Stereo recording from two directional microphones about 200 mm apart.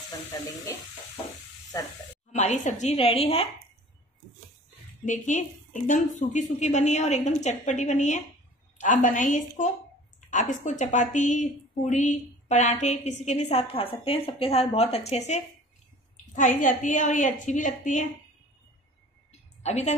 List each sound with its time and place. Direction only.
2.3 s a woman's voice: 35° left (ahead or behind)
5.0 s a woman's voice: 40° left (ahead or behind)
19.6 s a woman's voice: 35° left (ahead or behind)